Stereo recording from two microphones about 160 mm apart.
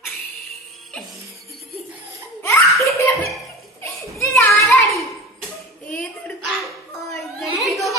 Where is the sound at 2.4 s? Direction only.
15° left (ahead or behind).